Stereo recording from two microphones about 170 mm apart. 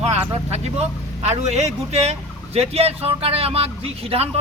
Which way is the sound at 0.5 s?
40° right (ahead or behind).